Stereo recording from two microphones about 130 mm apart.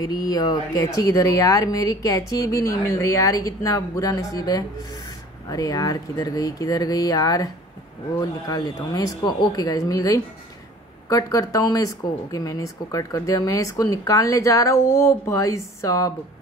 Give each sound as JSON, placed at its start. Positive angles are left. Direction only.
{"t": 0.0, "sound": "speech", "side_deg": 30}